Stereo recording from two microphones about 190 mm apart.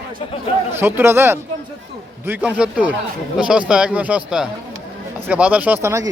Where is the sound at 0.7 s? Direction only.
10° right (ahead or behind).